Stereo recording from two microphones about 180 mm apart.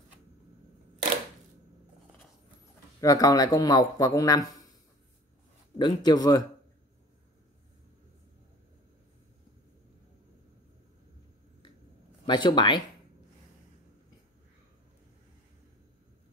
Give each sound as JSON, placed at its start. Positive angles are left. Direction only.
{"t": 3.0, "sound": "a man's voice", "side_deg": 20}
{"t": 5.8, "sound": "a man's voice", "side_deg": 25}
{"t": 12.3, "sound": "a man's voice", "side_deg": 25}